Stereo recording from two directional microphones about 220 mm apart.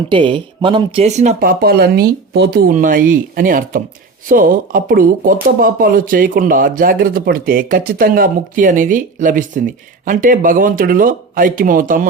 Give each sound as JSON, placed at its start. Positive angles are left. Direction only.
{"t": 0.1, "sound": "speech", "side_deg": -20}